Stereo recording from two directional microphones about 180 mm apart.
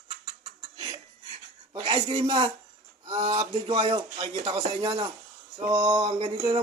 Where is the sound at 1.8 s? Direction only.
30° right (ahead or behind).